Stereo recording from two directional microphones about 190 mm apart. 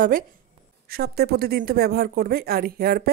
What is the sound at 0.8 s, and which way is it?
Speech, 55° right (ahead or behind).